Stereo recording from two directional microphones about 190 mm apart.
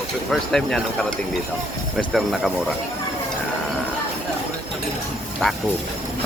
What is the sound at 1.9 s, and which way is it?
Speech, centre (ahead or behind).